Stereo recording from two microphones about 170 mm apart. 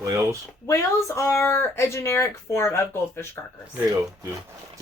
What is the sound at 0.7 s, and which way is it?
Speech, 20° left (ahead or behind).